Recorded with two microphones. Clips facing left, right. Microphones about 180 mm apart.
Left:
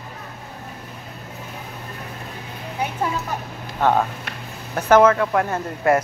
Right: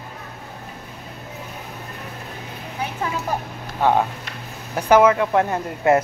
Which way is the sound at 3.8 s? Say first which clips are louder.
Even; 15° right (ahead or behind).